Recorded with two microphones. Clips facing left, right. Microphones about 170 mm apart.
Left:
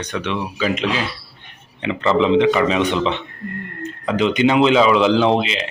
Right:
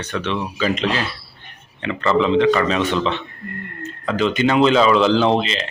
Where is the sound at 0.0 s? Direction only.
15° left (ahead or behind).